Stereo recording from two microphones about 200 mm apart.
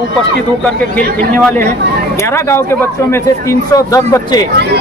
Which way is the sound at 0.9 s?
5° left (ahead or behind).